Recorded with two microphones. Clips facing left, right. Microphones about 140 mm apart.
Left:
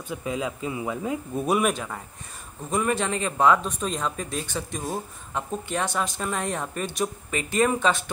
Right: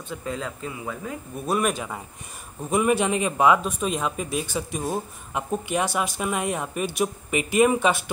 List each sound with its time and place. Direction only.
0.1 s speech: 10° left (ahead or behind)
0.7 s speech: 20° left (ahead or behind)
1.6 s speech: 5° right (ahead or behind)